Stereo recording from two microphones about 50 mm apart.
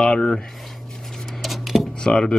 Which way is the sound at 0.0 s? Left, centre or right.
Centre.